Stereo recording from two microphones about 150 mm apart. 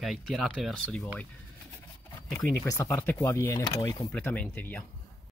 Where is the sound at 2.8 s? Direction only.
15° left (ahead or behind).